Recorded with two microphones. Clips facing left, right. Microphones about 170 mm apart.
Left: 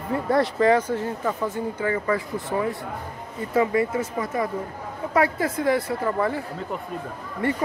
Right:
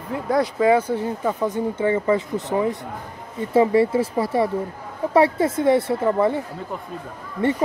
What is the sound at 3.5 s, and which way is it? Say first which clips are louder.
Speech: right 5 dB; 30° right (ahead or behind).